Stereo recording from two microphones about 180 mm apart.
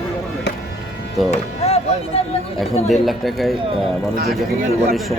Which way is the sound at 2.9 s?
Centre (ahead or behind).